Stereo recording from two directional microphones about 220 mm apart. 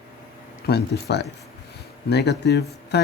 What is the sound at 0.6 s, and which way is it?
Speech, 50° left (ahead or behind).